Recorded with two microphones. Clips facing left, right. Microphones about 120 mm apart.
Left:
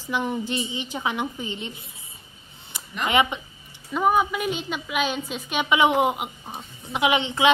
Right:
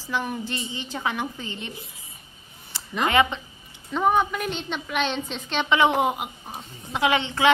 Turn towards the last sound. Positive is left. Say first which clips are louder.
# even
turn(degrees=15)  # may be behind; listen again after turning